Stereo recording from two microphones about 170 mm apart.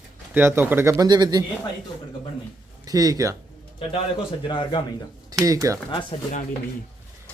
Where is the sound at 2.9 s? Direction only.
20° right (ahead or behind).